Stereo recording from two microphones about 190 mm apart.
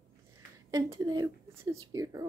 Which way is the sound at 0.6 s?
15° right (ahead or behind).